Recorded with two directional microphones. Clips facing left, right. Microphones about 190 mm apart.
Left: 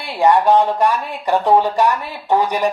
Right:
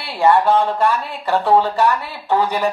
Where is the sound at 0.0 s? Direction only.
15° left (ahead or behind).